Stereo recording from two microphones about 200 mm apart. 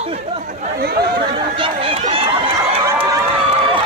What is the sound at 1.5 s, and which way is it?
Run, 25° right (ahead or behind).